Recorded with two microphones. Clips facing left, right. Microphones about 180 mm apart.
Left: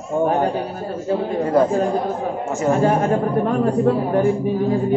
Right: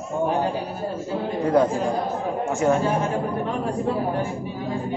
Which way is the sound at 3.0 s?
55° left (ahead or behind).